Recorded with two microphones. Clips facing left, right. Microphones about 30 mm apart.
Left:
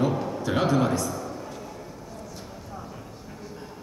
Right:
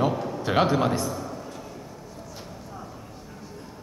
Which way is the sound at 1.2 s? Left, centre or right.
Centre.